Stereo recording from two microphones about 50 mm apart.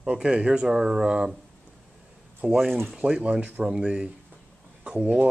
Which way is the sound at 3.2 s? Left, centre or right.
Right.